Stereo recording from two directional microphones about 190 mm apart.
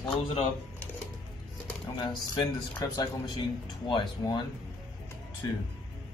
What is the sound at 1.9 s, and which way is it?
Speech, 20° left (ahead or behind).